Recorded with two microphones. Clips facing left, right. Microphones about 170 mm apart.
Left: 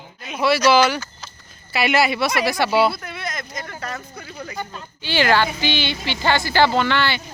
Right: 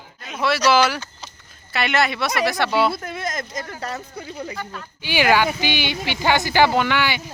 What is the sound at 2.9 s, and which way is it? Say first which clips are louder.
Speech: right 3 dB; 45° right (ahead or behind).